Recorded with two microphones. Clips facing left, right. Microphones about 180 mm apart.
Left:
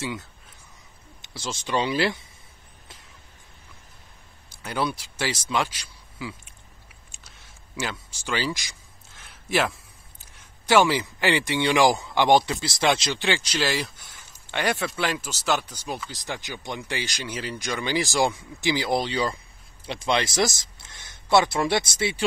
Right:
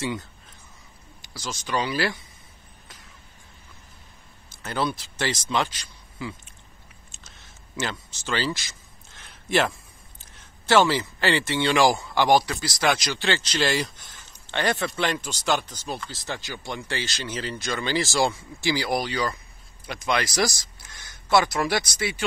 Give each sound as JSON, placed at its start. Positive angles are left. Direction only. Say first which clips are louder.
{"t": 1.2, "sound": "speech", "louder": "left 1 dB", "side_deg": 25}
{"t": 4.5, "sound": "speech", "louder": "even", "side_deg": 10}
{"t": 7.1, "sound": "a sound", "louder": "right 1 dB", "side_deg": 10}
{"t": 10.3, "sound": "speech", "louder": "even", "side_deg": 10}
{"t": 13.3, "sound": "speech", "louder": "right 1 dB", "side_deg": 10}